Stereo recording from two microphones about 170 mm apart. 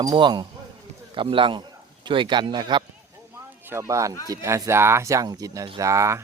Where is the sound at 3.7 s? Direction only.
15° right (ahead or behind).